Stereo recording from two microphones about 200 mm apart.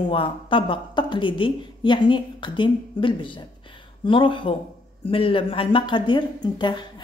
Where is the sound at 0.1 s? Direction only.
25° left (ahead or behind).